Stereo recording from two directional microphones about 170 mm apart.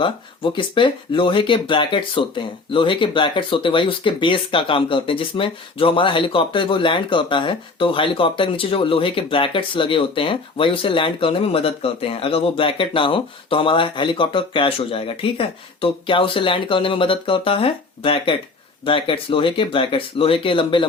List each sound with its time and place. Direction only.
0.5 s speech: 30° left (ahead or behind)